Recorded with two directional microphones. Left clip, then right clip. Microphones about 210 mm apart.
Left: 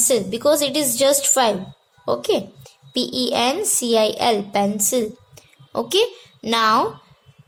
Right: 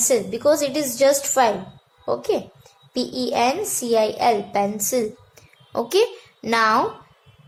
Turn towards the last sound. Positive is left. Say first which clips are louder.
# left 1 dB
turn(degrees=35)  # may be behind; listen again after turning